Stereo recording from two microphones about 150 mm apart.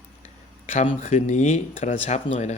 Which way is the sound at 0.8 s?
45° left (ahead or behind).